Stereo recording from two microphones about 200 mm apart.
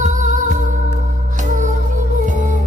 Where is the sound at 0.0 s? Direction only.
40° right (ahead or behind).